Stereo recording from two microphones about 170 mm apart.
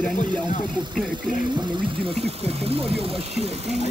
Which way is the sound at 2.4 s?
35° right (ahead or behind).